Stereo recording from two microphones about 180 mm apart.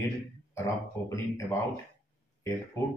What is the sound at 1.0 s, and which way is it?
Speech, 15° left (ahead or behind).